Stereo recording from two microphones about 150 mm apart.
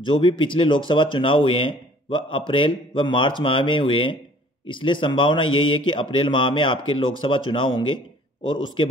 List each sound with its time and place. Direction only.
0.0 s speech: 35° left (ahead or behind)